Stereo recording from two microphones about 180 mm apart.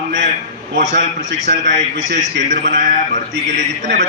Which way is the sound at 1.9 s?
45° right (ahead or behind).